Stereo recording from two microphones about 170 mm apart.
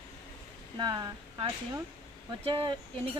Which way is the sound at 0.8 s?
25° right (ahead or behind).